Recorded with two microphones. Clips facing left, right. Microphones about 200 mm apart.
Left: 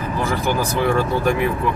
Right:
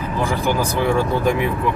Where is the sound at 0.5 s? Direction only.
15° right (ahead or behind).